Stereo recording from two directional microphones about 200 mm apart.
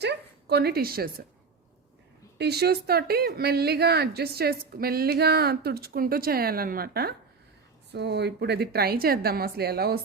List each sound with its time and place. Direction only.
0.0 s a woman's voice: 55° right (ahead or behind)
2.4 s speech: 55° right (ahead or behind)